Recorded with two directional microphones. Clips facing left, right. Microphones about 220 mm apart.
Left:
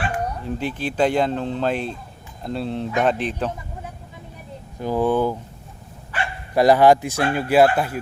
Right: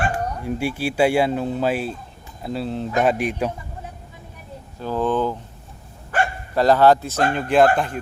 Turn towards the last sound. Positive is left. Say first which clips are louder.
# even
turn(degrees=5)  # may be behind; listen again after turning